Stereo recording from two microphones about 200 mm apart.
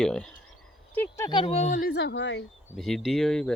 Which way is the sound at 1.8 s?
55° left (ahead or behind).